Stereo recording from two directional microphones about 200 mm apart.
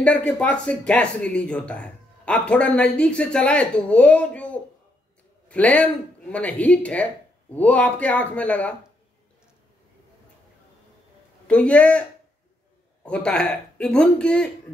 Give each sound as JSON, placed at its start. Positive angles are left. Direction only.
{"t": 0.0, "sound": "speech", "side_deg": 5}
{"t": 11.4, "sound": "speech", "side_deg": 5}
{"t": 13.0, "sound": "speech", "side_deg": 5}